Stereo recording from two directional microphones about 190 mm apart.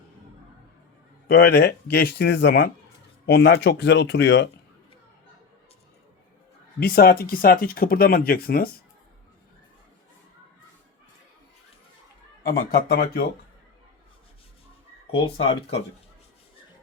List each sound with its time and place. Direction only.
1.3 s speech: 55° left (ahead or behind)
6.7 s speech: 55° left (ahead or behind)
12.4 s speech: 50° left (ahead or behind)
15.1 s speech: 30° left (ahead or behind)